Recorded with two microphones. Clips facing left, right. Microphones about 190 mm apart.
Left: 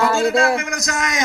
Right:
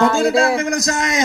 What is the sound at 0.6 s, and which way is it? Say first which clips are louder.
Speech: right 5 dB; 35° right (ahead or behind).